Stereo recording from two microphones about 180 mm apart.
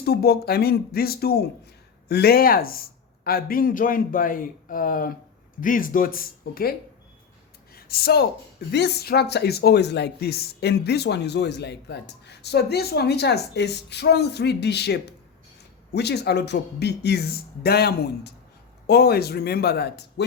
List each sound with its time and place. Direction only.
0.0 s a man's voice: 60° left (ahead or behind)
7.7 s a sound: 55° left (ahead or behind)
8.7 s speech: 65° left (ahead or behind)